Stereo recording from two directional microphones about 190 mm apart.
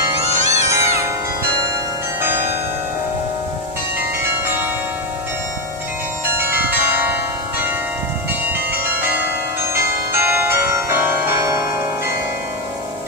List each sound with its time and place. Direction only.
0.2 s music: 35° left (ahead or behind)
6.2 s bell: 10° right (ahead or behind)
8.5 s change ringing: 10° right (ahead or behind)
9.8 s music: 15° right (ahead or behind)